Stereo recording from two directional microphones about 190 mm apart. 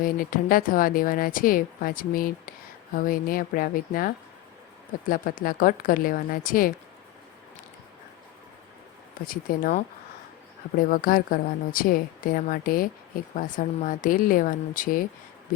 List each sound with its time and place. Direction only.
0.0 s a woman's voice: 50° left (ahead or behind)
9.2 s a woman's voice: 50° left (ahead or behind)